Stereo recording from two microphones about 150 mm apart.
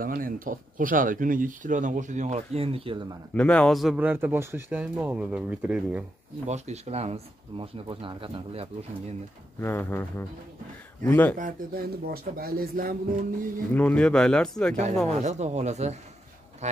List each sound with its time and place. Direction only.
0.0 s speech: 70° right (ahead or behind); by 3.0 s 40° right (ahead or behind)
3.3 s speech: 5° left (ahead or behind)
4.0 s speech: 15° right (ahead or behind)
6.4 s speech: 50° right (ahead or behind)
9.6 s speech: 15° left (ahead or behind)
11.3 s speech: 70° right (ahead or behind)
13.7 s speech: 10° left (ahead or behind)
15.0 s speech: 50° right (ahead or behind)